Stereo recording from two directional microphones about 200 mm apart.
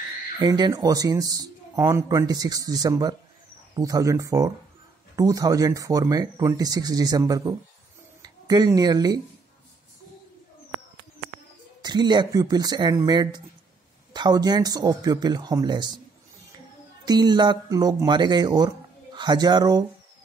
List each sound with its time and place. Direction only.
0.4 s a man's voice: 20° right (ahead or behind)
11.8 s speech: 20° right (ahead or behind)
17.0 s speech: 20° right (ahead or behind)